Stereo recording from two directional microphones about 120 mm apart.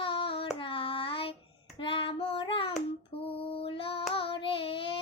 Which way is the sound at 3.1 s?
50° left (ahead or behind).